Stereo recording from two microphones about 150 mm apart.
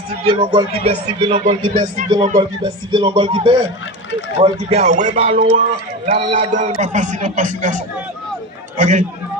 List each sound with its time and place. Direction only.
0.3 s a man's voice: 35° right (ahead or behind); by 7.8 s 55° right (ahead or behind)
8.8 s a man's voice: 55° right (ahead or behind)